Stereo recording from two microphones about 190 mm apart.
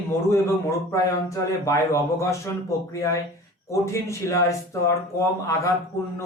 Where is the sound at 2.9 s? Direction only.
15° left (ahead or behind).